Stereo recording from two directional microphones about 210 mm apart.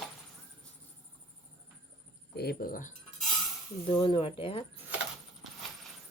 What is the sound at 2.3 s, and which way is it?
Speech, 50° left (ahead or behind).